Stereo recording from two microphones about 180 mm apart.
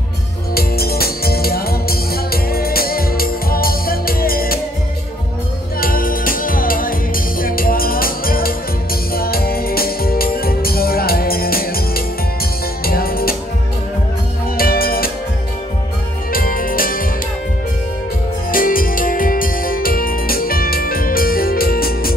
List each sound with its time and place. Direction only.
0.6 s music: 60° left (ahead or behind)
5.8 s music: 55° left (ahead or behind)
14.6 s music: 55° left (ahead or behind)
16.3 s music: 55° left (ahead or behind)
18.5 s music: 50° left (ahead or behind)